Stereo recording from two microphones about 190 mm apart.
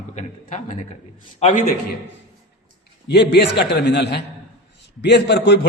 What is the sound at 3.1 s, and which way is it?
A man's voice, 60° left (ahead or behind).